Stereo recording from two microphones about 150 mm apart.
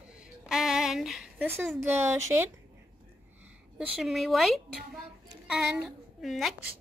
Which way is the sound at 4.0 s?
Centre (ahead or behind).